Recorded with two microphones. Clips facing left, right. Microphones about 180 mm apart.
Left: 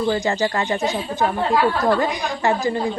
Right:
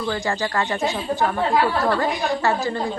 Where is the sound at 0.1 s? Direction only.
20° left (ahead or behind).